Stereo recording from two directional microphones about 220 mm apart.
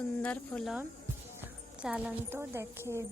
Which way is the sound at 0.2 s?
5° left (ahead or behind).